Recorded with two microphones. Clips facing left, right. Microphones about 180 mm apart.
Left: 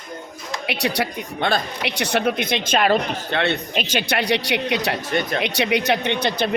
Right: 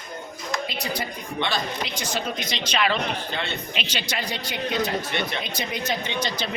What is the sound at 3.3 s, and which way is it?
Speech, 65° left (ahead or behind).